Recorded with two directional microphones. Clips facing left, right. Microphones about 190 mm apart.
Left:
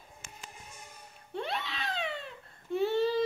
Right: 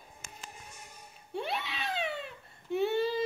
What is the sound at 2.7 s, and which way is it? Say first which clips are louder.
Baby cry: left 1 dB; centre (ahead or behind).